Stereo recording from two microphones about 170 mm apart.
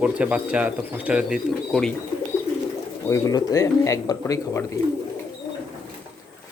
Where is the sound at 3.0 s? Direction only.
20° left (ahead or behind).